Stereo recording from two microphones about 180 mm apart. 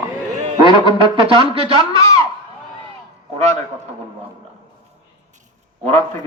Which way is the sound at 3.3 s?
40° right (ahead or behind).